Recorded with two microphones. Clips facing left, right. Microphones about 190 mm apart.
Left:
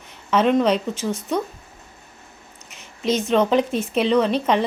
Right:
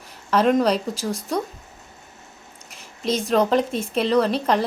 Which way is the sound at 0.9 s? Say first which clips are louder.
Left 2 dB; 35° right (ahead or behind).